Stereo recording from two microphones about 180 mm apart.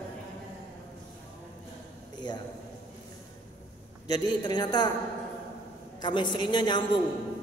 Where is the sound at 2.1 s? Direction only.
25° left (ahead or behind).